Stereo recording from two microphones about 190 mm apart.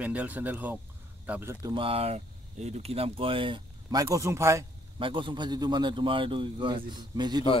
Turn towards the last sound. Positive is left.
turn(degrees=-25)  # may be behind; listen again after turning